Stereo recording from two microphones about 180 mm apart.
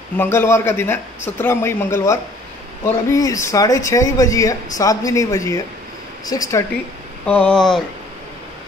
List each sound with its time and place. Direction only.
0.2 s a man's voice: 10° left (ahead or behind)
7.2 s speech: 5° left (ahead or behind)